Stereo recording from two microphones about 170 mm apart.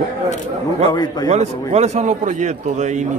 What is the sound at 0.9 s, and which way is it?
Speech, 25° left (ahead or behind).